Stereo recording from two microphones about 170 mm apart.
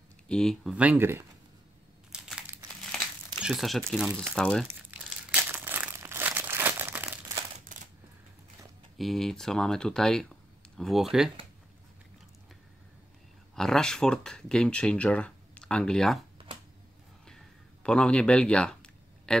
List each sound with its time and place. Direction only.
0.3 s speech: 5° left (ahead or behind)
0.7 s speech: 10° right (ahead or behind)
2.1 s crumpling: 5° right (ahead or behind)
3.3 s speech: 5° right (ahead or behind)
5.0 s crumpling: 10° right (ahead or behind)
7.6 s coin: 50° right (ahead or behind)
8.9 s speech: centre (ahead or behind)
13.6 s speech: 5° left (ahead or behind)
17.8 s speech: 5° left (ahead or behind)